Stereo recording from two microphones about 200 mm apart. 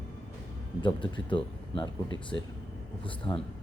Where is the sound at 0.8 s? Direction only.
25° left (ahead or behind).